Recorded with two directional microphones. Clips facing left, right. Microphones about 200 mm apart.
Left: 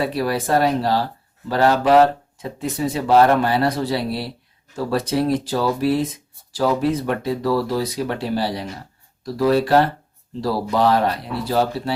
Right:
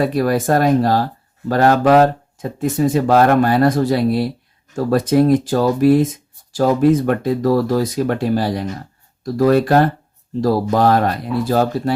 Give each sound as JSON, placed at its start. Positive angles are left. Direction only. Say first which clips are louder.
{"t": 0.0, "sound": "speech", "louder": "right 5 dB", "side_deg": -45}